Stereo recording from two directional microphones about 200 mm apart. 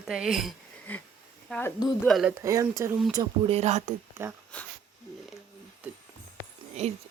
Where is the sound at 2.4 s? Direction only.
15° right (ahead or behind).